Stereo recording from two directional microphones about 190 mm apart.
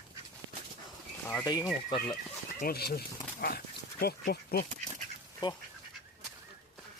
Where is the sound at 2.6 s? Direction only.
55° left (ahead or behind).